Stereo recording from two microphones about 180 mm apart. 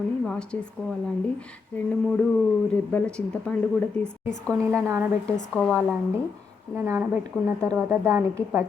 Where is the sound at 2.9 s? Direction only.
5° left (ahead or behind).